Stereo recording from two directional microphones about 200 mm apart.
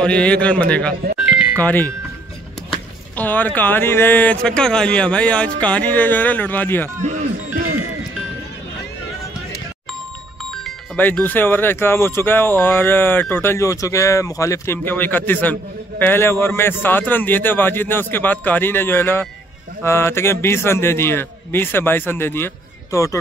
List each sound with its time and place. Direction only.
0.0 s a man's voice: 5° left (ahead or behind)
3.2 s speech: 10° left (ahead or behind)
7.0 s speech: 40° right (ahead or behind)
10.5 s speech: 5° left (ahead or behind)